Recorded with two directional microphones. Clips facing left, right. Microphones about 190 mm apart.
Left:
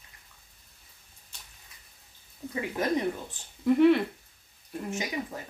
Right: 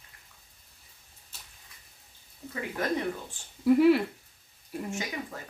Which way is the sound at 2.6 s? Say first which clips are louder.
Left 2 dB; 20° left (ahead or behind).